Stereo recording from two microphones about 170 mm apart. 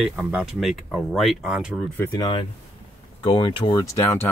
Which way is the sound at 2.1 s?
25° left (ahead or behind).